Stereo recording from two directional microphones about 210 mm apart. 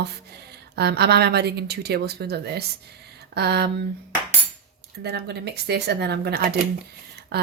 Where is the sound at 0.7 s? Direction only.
50° right (ahead or behind).